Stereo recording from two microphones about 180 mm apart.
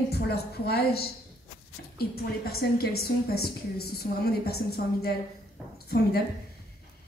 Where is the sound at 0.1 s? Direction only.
65° left (ahead or behind).